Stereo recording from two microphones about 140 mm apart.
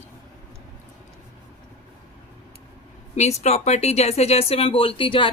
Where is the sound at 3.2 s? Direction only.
50° left (ahead or behind).